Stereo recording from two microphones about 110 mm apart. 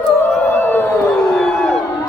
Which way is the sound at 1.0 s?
5° left (ahead or behind).